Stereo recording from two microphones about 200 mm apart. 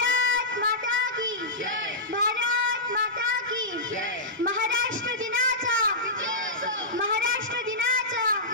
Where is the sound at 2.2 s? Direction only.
70° right (ahead or behind).